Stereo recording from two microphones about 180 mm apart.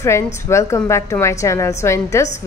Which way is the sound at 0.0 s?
15° left (ahead or behind).